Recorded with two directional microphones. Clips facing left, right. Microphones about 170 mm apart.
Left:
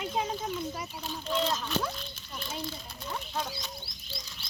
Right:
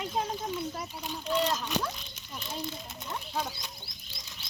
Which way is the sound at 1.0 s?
15° right (ahead or behind).